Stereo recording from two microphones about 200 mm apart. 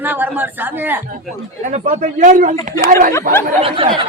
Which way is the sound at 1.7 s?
40° right (ahead or behind).